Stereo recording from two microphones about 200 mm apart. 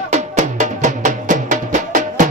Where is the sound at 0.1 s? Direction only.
35° right (ahead or behind).